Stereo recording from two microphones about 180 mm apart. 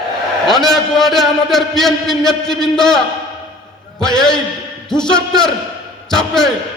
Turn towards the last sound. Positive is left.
turn(degrees=5)  # may be behind; listen again after turning